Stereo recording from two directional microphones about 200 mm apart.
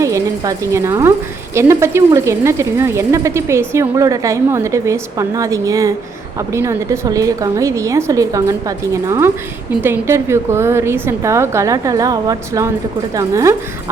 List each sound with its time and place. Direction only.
0.0 s speech: 15° right (ahead or behind)